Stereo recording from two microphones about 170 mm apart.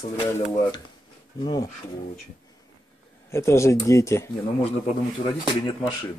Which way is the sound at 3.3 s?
15° left (ahead or behind).